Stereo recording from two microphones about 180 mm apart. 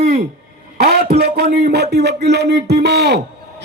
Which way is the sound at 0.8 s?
60° right (ahead or behind).